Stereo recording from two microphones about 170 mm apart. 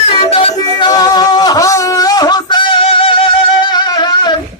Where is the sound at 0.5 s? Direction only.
25° left (ahead or behind).